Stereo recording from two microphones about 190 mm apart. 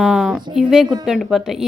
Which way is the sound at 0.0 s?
Centre (ahead or behind).